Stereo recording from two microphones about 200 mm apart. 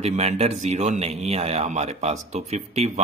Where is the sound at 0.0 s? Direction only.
35° right (ahead or behind).